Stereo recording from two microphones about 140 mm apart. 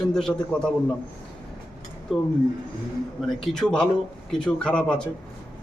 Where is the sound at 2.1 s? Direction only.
Centre (ahead or behind).